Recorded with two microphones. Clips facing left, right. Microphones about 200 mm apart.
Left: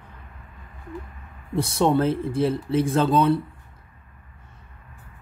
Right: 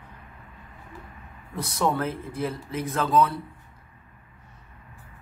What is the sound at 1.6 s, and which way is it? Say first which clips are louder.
Speech: left 6 dB; 30° left (ahead or behind).